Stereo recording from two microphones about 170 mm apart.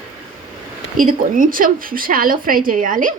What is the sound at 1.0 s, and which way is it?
A woman's voice, 55° right (ahead or behind).